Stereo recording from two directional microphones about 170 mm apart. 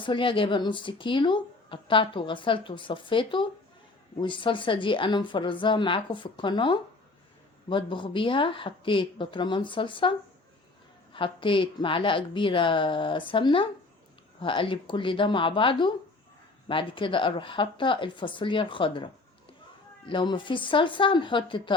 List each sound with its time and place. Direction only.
0.0 s speech: 30° left (ahead or behind)